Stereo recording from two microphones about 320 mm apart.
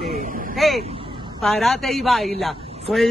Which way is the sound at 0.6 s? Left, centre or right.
Centre.